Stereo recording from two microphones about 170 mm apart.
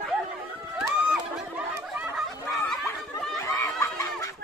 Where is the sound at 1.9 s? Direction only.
5° right (ahead or behind).